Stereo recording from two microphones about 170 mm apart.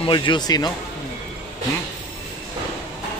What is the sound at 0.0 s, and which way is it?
Speech, 30° left (ahead or behind).